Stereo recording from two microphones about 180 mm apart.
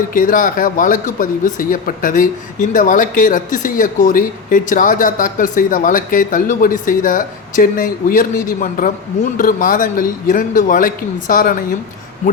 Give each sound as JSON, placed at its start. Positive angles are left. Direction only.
{"t": 0.1, "sound": "speech", "side_deg": 50}